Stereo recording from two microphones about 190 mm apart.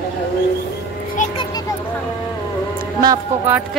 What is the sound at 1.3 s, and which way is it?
Children playing, 25° left (ahead or behind).